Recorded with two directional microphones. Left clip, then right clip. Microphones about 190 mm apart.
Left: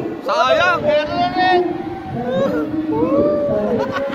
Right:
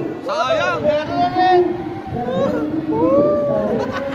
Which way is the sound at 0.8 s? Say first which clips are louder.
Left 1 dB; 5° right (ahead or behind).